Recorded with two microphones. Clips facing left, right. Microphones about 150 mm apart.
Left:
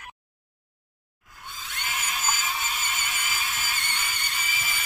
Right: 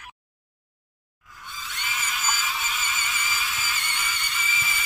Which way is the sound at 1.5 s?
50° left (ahead or behind).